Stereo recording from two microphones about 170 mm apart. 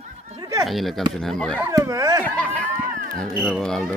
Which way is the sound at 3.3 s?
Centre (ahead or behind).